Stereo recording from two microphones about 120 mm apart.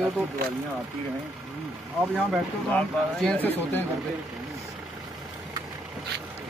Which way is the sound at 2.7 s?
10° left (ahead or behind).